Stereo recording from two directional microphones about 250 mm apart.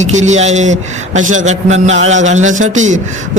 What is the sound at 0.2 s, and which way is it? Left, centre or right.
A man's voice, right.